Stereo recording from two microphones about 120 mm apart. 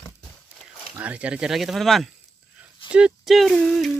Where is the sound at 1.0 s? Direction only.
10° right (ahead or behind).